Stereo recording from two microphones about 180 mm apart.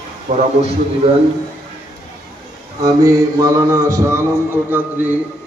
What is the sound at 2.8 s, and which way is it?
Mantra, 15° right (ahead or behind).